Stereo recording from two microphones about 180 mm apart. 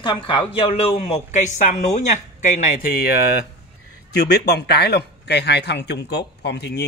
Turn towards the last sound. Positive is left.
turn(degrees=65)  # may be behind; listen again after turning